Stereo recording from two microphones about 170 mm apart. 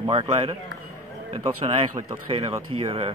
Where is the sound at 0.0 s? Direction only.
30° right (ahead or behind).